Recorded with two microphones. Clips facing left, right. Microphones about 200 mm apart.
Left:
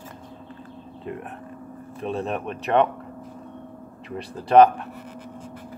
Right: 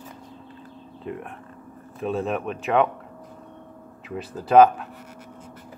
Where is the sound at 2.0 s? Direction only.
Centre (ahead or behind).